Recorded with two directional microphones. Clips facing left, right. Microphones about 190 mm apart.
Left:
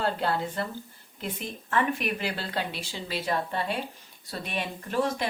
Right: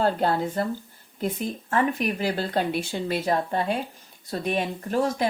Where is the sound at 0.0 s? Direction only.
45° right (ahead or behind).